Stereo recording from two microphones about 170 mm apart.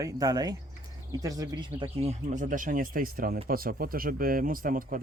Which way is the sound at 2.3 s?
50° right (ahead or behind).